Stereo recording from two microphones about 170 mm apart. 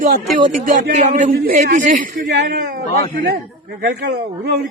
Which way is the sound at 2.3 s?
70° right (ahead or behind).